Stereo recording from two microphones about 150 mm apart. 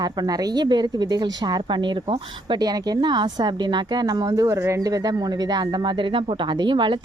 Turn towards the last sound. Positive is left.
turn(degrees=-30)  # may be behind; listen again after turning